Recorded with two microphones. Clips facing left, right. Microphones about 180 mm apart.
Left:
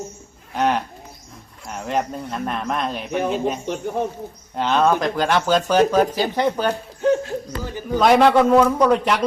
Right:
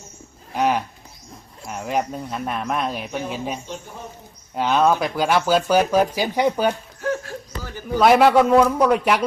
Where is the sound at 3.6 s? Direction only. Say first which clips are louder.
Left 11 dB; 65° left (ahead or behind).